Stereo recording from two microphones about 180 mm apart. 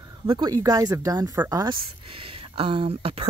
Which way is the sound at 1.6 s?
30° right (ahead or behind).